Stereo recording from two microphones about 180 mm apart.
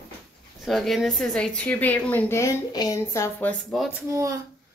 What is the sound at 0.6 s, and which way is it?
A woman's voice, centre (ahead or behind).